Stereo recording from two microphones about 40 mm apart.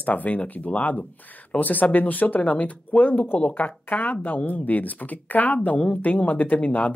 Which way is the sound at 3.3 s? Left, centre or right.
Left.